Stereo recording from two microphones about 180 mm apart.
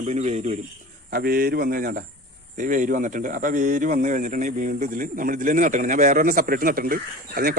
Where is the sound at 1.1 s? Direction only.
55° right (ahead or behind).